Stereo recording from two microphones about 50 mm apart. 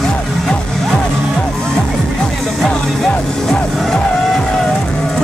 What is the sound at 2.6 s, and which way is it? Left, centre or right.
Music, centre.